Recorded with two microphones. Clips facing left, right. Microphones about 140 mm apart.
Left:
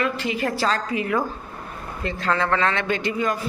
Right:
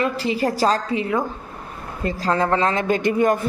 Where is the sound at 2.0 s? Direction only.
40° right (ahead or behind).